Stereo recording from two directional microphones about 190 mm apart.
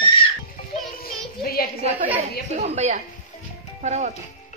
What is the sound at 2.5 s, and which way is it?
A woman's voice, 35° right (ahead or behind).